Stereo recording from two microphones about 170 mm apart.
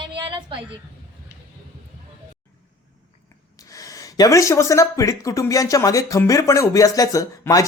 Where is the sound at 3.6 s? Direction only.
20° left (ahead or behind).